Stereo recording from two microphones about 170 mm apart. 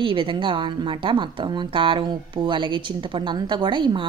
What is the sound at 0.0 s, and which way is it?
Speech, 30° right (ahead or behind).